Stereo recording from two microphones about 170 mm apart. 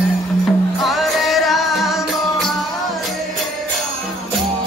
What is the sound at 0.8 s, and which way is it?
Music, centre (ahead or behind).